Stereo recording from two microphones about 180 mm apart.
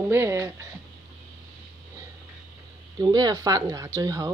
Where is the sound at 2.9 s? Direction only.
20° right (ahead or behind).